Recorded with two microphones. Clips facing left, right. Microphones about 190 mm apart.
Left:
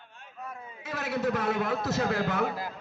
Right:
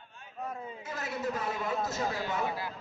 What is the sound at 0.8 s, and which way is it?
A man's voice, 70° left (ahead or behind).